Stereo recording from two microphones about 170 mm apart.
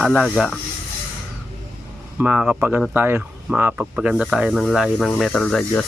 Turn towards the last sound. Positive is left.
turn(degrees=5)  # may be behind; listen again after turning